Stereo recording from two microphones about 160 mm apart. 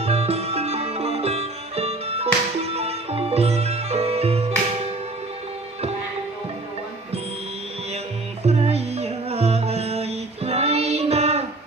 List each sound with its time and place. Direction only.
0.0 s music: 40° right (ahead or behind)
8.4 s music: 40° right (ahead or behind)